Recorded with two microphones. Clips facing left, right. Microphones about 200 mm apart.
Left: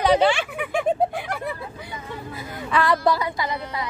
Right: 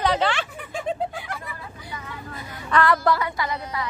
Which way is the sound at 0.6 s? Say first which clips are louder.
Left 6 dB; 70° left (ahead or behind).